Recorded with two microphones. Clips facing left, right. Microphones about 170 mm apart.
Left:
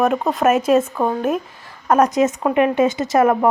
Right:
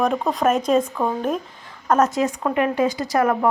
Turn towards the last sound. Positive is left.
turn(degrees=25)  # may be behind; listen again after turning